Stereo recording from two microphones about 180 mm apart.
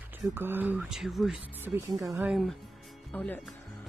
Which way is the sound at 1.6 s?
15° right (ahead or behind).